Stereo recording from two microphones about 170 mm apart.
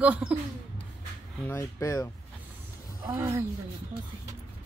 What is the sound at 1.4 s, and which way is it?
Speech, 15° left (ahead or behind).